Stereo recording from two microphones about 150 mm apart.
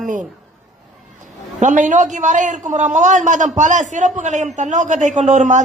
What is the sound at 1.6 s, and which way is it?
A woman's voice, 55° right (ahead or behind).